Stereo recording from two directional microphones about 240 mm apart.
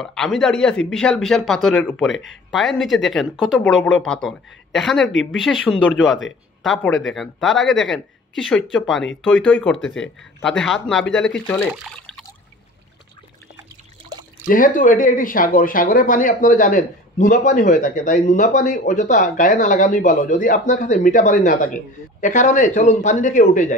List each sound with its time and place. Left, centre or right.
0.0 s a man's voice: centre
14.5 s speech: left